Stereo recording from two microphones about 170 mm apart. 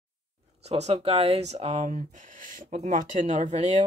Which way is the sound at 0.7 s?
40° right (ahead or behind).